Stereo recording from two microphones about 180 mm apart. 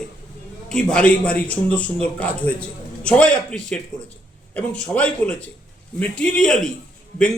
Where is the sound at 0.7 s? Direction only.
5° left (ahead or behind).